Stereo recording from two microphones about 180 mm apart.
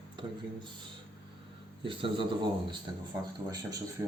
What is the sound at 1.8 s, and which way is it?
Speech, 30° right (ahead or behind).